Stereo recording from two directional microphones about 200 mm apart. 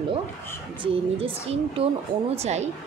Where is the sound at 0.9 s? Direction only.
30° right (ahead or behind).